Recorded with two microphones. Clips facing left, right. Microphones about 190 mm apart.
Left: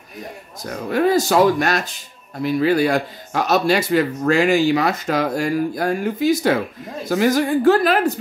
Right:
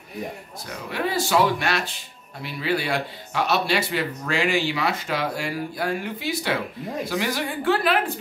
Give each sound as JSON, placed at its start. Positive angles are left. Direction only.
{"t": 0.7, "sound": "speech", "side_deg": 45}